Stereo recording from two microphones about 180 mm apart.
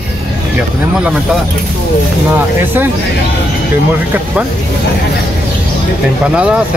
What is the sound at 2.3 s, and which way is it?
Speech, 10° right (ahead or behind).